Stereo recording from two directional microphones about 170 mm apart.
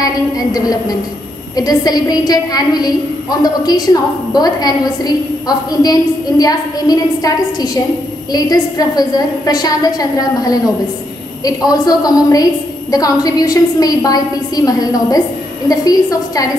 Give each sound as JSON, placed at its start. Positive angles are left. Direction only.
{"t": 0.0, "sound": "a woman's voice", "side_deg": 20}